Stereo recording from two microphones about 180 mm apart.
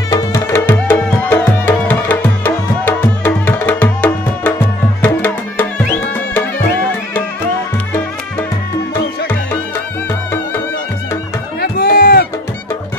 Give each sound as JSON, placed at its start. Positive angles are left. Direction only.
{"t": 0.1, "sound": "music", "side_deg": 15}
{"t": 11.6, "sound": "music", "side_deg": 55}